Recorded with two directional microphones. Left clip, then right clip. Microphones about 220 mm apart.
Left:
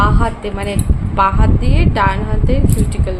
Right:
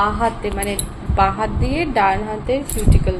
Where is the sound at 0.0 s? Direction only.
10° left (ahead or behind).